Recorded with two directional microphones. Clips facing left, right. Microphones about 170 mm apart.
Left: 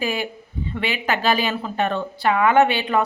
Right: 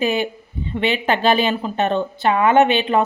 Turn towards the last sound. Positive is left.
turn(degrees=-25)  # may be behind; listen again after turning